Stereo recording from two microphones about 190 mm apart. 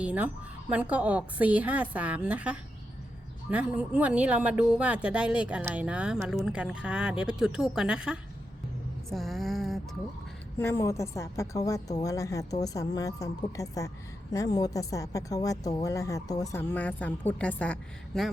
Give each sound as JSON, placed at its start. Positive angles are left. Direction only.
{"t": 0.0, "sound": "a woman's voice", "side_deg": -5}
{"t": 9.0, "sound": "a sound", "side_deg": 0}
{"t": 10.6, "sound": "a woman's voice", "side_deg": 15}